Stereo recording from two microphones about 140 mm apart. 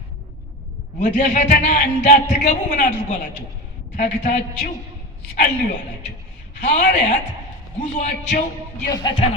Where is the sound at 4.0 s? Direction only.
60° left (ahead or behind).